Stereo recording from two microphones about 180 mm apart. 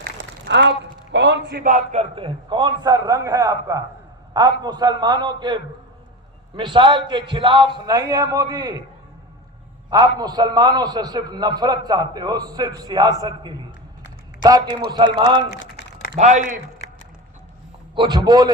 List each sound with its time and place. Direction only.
0.2 s a man's voice: 80° right; by 8.8 s 25° right (ahead or behind)
10.2 s a man's voice: 20° right (ahead or behind)
16.1 s speech: 40° right (ahead or behind)
17.9 s a man's voice: 25° right (ahead or behind)